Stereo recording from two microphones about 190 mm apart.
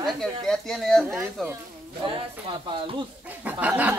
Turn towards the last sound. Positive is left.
turn(degrees=-10)  # may be behind; listen again after turning